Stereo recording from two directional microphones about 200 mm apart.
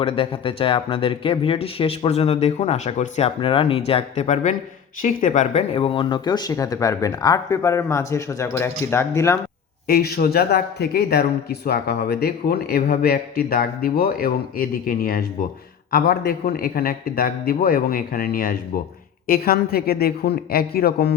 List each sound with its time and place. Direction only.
0.0 s speech: 25° left (ahead or behind)
9.8 s speech: 50° left (ahead or behind)